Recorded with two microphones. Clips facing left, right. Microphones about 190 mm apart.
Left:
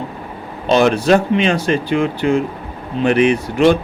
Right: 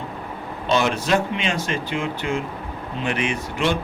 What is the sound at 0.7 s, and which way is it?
Speech, 40° left (ahead or behind).